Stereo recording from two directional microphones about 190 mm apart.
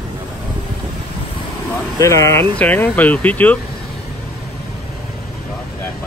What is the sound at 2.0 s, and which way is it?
Speech, 15° left (ahead or behind).